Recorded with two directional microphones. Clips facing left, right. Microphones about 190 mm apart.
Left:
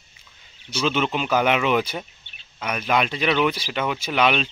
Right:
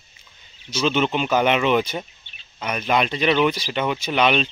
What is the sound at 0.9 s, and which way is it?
Speech, centre (ahead or behind).